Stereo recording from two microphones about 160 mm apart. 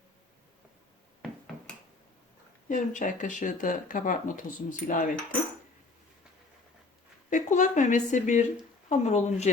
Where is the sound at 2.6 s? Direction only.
55° left (ahead or behind).